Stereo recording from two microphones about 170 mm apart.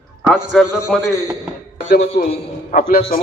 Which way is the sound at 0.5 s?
Centre (ahead or behind).